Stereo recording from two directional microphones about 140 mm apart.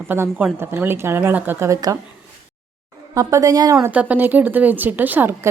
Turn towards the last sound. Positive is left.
turn(degrees=-15)  # may be behind; listen again after turning